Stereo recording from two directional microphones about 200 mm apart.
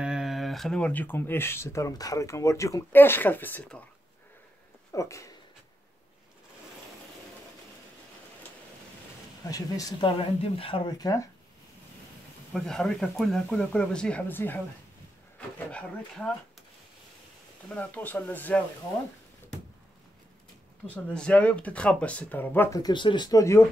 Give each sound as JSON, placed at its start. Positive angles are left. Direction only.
{"t": 0.0, "sound": "speech", "side_deg": -5}
{"t": 4.9, "sound": "speech", "side_deg": 15}
{"t": 9.4, "sound": "speech", "side_deg": 15}
{"t": 12.5, "sound": "speech", "side_deg": 5}
{"t": 17.6, "sound": "speech", "side_deg": 10}
{"t": 20.8, "sound": "speech", "side_deg": 5}